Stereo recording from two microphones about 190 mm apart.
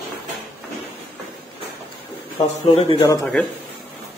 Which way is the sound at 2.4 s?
35° left (ahead or behind).